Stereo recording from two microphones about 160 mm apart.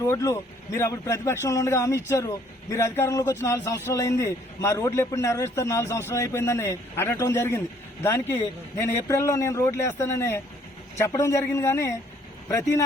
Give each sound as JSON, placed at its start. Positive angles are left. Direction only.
{"t": 0.1, "sound": "a man's voice", "side_deg": 20}